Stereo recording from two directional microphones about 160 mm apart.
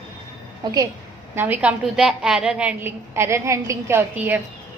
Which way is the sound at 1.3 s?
10° right (ahead or behind).